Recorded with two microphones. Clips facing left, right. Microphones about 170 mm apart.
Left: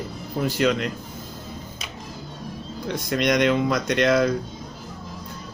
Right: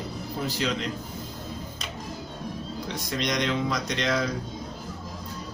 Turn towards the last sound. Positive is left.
turn(degrees=55)  # may be behind; listen again after turning